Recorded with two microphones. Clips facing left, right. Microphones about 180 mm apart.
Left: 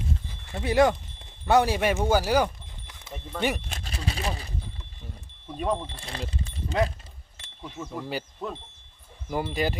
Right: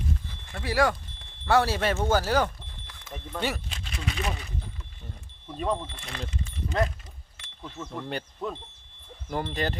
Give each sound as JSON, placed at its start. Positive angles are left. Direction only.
{"t": 0.3, "sound": "speech", "side_deg": 20}
{"t": 3.7, "sound": "speech", "side_deg": 40}
{"t": 5.5, "sound": "speech", "side_deg": 10}
{"t": 5.9, "sound": "speech", "side_deg": 30}
{"t": 7.6, "sound": "speech", "side_deg": 10}